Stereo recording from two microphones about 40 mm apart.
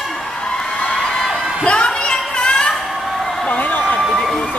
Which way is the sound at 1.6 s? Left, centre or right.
Left.